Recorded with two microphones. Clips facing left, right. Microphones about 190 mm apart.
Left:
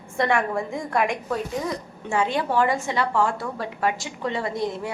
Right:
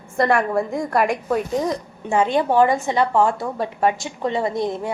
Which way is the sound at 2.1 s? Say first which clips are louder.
Right 5 dB; 20° right (ahead or behind).